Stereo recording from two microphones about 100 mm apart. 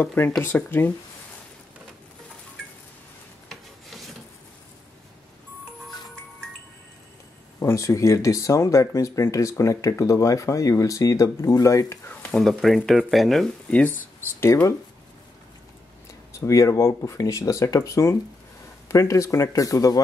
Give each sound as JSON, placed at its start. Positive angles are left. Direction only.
{"t": 0.0, "sound": "speech", "side_deg": 20}
{"t": 3.4, "sound": "rub", "side_deg": 0}
{"t": 7.6, "sound": "speech", "side_deg": 30}
{"t": 12.1, "sound": "speech", "side_deg": 10}
{"t": 13.7, "sound": "speech", "side_deg": 15}
{"t": 16.3, "sound": "speech", "side_deg": 30}